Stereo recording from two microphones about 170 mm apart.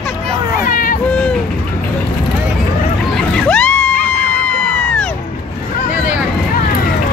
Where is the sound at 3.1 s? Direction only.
5° left (ahead or behind).